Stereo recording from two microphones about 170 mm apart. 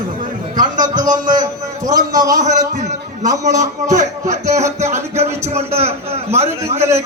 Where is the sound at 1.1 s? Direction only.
50° right (ahead or behind).